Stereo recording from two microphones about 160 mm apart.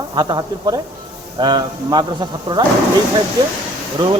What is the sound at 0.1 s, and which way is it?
Speech, 25° right (ahead or behind).